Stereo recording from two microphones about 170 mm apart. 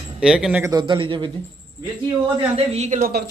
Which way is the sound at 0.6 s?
25° right (ahead or behind).